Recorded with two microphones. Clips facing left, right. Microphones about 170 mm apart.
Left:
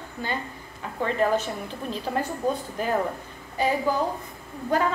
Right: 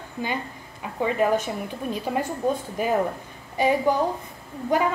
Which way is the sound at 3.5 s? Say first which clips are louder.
Right 3 dB; 15° right (ahead or behind).